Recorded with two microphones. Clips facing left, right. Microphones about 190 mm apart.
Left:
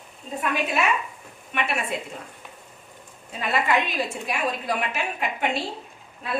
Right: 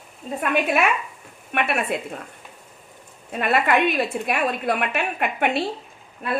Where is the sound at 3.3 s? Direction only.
60° right (ahead or behind).